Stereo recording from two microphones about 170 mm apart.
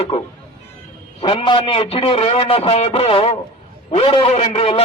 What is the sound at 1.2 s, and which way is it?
A man's voice, 30° left (ahead or behind).